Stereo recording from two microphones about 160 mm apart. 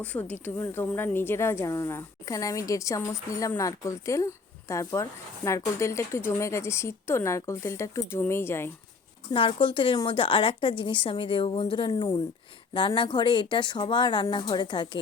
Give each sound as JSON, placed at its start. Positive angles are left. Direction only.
{"t": 0.0, "sound": "a woman's voice", "side_deg": 10}
{"t": 9.3, "sound": "a woman's voice", "side_deg": 30}